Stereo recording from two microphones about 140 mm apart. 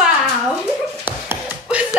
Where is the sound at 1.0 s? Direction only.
10° right (ahead or behind).